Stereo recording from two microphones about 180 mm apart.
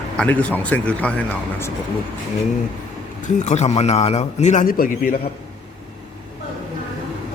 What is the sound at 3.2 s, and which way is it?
A man's voice, 40° left (ahead or behind).